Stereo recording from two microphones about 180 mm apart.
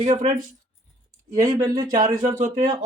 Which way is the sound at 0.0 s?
40° right (ahead or behind).